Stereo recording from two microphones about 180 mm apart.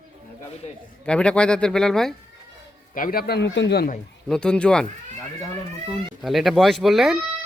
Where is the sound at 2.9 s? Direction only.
50° left (ahead or behind); by 3.8 s 70° left (ahead or behind).